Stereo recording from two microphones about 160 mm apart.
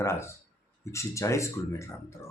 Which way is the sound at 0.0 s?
15° left (ahead or behind).